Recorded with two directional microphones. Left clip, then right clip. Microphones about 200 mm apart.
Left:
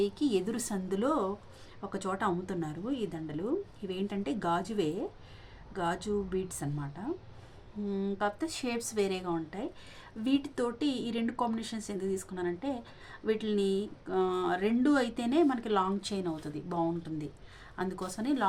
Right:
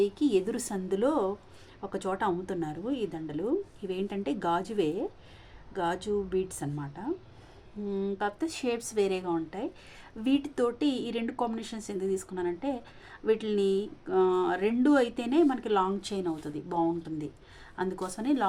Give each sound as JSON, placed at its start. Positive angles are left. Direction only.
{"t": 0.0, "sound": "a woman's voice", "side_deg": -10}